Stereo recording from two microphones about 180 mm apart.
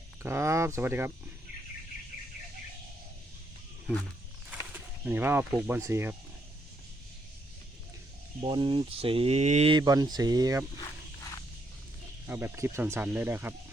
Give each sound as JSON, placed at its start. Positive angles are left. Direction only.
{"t": 0.2, "sound": "speech", "side_deg": -15}
{"t": 4.7, "sound": "speech", "side_deg": -10}
{"t": 8.4, "sound": "speech", "side_deg": -30}
{"t": 9.7, "sound": "speech", "side_deg": -20}
{"t": 12.3, "sound": "speech", "side_deg": -10}